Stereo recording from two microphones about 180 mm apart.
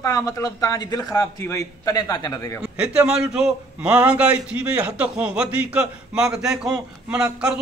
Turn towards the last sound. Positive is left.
turn(degrees=-5)  # may be behind; listen again after turning